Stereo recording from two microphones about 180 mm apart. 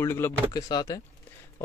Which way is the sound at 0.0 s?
15° left (ahead or behind).